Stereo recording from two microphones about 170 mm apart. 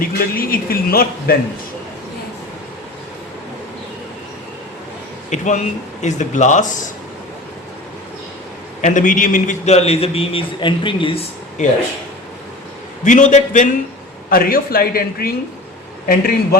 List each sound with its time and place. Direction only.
0.0 s a man's voice: 60° left (ahead or behind)
5.3 s speech: 45° left (ahead or behind)
8.8 s a man's voice: 50° left (ahead or behind)
13.1 s speech: 50° left (ahead or behind)
14.3 s a man's voice: 60° left (ahead or behind)